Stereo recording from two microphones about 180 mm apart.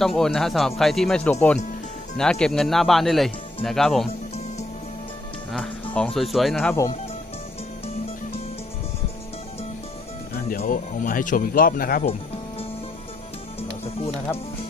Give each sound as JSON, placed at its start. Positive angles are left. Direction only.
{"t": 0.0, "sound": "speech", "side_deg": 0}
{"t": 6.1, "sound": "speech", "side_deg": 0}
{"t": 6.6, "sound": "speech", "side_deg": 15}
{"t": 10.6, "sound": "speech", "side_deg": 45}
{"t": 13.6, "sound": "music", "side_deg": 35}